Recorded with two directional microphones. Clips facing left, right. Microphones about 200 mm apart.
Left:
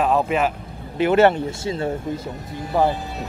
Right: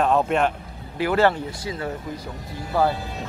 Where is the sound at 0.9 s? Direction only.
20° left (ahead or behind).